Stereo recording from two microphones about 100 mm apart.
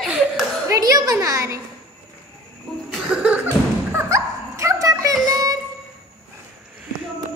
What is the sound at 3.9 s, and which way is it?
Dog, 30° right (ahead or behind).